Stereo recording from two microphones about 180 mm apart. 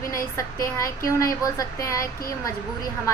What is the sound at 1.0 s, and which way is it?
Speech, 20° left (ahead or behind).